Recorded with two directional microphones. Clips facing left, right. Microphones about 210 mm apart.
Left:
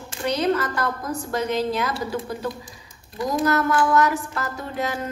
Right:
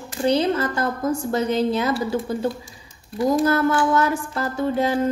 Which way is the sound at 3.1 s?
30° right (ahead or behind).